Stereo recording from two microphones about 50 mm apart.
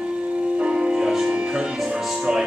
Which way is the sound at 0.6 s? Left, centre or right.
Centre.